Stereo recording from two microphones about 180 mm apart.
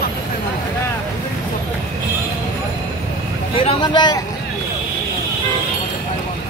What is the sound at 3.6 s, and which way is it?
Speech, 30° left (ahead or behind).